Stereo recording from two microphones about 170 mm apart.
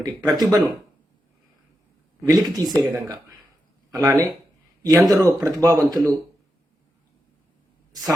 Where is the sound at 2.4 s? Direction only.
25° right (ahead or behind).